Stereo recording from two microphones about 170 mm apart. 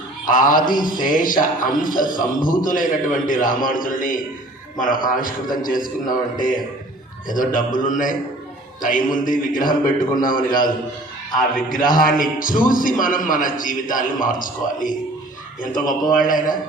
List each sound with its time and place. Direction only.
0.3 s a man's voice: 55° left (ahead or behind)
11.7 s a man's voice: 55° left (ahead or behind)
16.1 s a man's voice: 55° left (ahead or behind)